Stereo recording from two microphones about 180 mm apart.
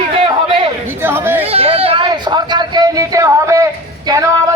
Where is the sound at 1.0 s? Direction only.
10° right (ahead or behind).